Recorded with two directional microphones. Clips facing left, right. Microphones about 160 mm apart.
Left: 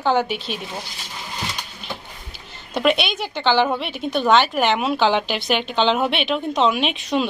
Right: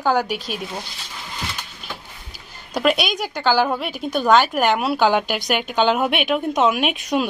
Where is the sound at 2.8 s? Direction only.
5° right (ahead or behind).